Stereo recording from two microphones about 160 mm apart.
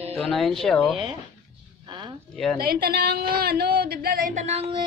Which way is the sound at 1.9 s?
30° right (ahead or behind).